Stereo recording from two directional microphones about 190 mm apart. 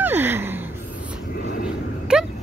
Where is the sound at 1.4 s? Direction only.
50° left (ahead or behind).